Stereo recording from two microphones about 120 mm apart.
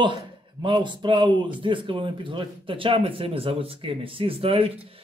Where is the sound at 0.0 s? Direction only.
40° right (ahead or behind).